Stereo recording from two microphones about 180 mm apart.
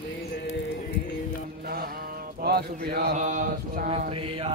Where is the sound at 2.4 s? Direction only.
60° right (ahead or behind).